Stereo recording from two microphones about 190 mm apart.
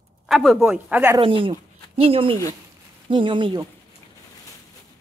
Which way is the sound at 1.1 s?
25° right (ahead or behind).